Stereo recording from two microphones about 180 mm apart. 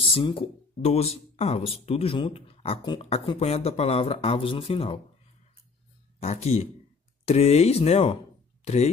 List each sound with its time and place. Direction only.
0.0 s speech: 30° left (ahead or behind)
6.2 s speech: 35° left (ahead or behind)